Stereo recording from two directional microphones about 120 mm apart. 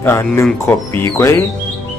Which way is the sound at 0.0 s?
20° left (ahead or behind).